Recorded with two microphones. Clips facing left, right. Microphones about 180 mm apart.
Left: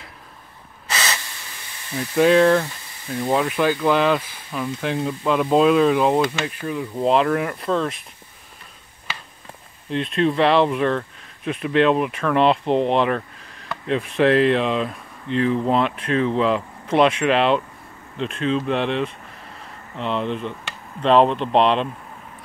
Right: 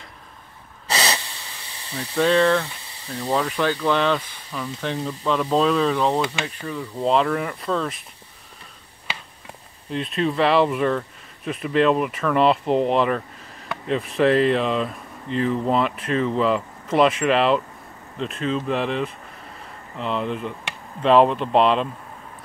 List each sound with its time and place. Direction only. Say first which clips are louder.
0.8 s snort: right 2 dB; 35° right (ahead or behind)
2.0 s speech: left 4 dB; 10° left (ahead or behind)
7.1 s speech: left 2 dB; centre (ahead or behind)
9.8 s speech: left 3 dB; centre (ahead or behind)